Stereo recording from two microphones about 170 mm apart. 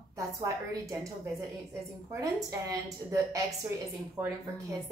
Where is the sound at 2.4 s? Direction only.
20° right (ahead or behind).